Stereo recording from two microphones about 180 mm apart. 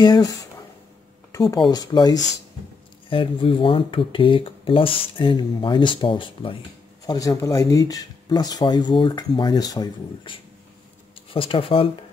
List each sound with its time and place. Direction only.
0.0 s speech: 20° left (ahead or behind)
1.5 s speech: 20° left (ahead or behind)
7.1 s speech: 20° left (ahead or behind)